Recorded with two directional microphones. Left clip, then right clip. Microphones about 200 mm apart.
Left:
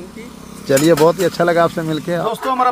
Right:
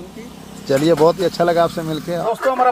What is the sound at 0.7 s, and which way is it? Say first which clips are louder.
Speech: left 2 dB; 10° left (ahead or behind).